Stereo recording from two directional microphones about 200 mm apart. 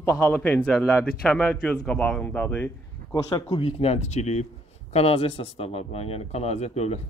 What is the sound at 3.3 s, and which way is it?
Speech, 25° left (ahead or behind).